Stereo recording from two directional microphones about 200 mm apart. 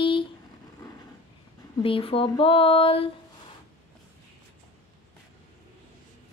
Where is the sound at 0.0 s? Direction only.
25° left (ahead or behind).